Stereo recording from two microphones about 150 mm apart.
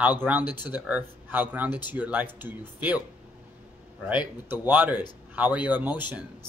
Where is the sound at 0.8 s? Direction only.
10° right (ahead or behind).